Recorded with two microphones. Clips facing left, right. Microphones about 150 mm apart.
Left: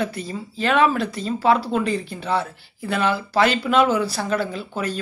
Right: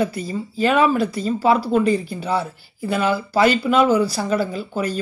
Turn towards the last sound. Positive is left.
turn(degrees=0)  # may be behind; listen again after turning